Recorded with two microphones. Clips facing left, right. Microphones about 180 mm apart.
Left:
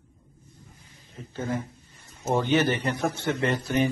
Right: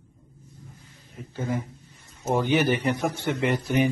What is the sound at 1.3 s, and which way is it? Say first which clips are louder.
A man's voice: right 1 dB; 10° right (ahead or behind).